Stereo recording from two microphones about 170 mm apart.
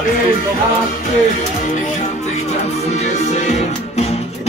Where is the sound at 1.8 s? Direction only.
45° left (ahead or behind).